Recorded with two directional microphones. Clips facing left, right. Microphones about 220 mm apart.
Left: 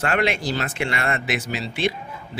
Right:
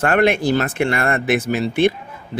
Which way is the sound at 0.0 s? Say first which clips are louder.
Right 7 dB; 50° right (ahead or behind).